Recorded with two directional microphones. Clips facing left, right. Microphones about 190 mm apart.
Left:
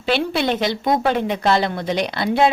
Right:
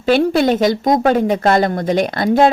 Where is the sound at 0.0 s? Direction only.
45° right (ahead or behind).